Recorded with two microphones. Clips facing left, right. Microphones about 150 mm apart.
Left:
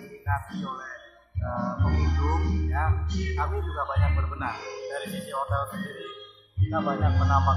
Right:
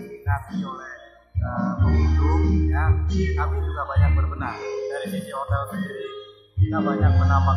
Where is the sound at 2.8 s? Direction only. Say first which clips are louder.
Right 5 dB; 15° left (ahead or behind).